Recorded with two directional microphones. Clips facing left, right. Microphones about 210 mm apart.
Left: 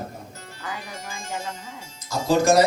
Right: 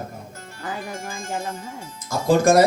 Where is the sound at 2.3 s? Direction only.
55° right (ahead or behind).